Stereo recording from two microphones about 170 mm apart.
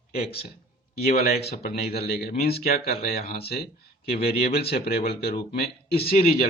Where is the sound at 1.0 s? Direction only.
70° left (ahead or behind).